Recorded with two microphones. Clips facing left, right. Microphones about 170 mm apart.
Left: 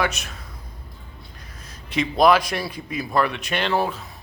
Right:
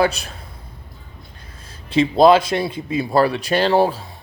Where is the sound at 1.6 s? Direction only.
30° right (ahead or behind).